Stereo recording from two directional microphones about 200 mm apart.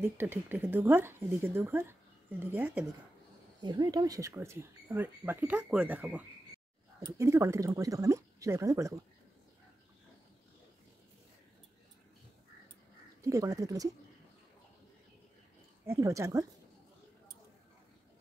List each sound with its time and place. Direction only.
0.0 s speech: 10° right (ahead or behind)
3.6 s speech: 20° right (ahead or behind)
13.2 s speech: 15° right (ahead or behind)
15.8 s speech: 15° right (ahead or behind)